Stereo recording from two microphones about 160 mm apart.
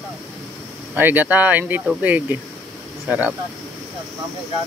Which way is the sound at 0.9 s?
10° right (ahead or behind).